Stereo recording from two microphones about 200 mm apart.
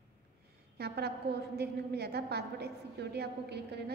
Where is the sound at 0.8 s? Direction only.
55° right (ahead or behind).